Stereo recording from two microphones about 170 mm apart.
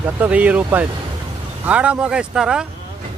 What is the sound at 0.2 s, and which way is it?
Speech, 10° right (ahead or behind).